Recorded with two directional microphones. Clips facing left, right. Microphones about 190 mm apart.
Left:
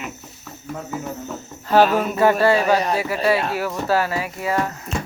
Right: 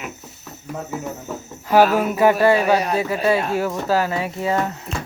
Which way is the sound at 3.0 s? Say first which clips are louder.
Right 1 dB; 20° right (ahead or behind).